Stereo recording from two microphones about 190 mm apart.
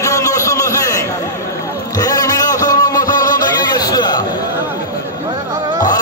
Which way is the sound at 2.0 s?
20° left (ahead or behind).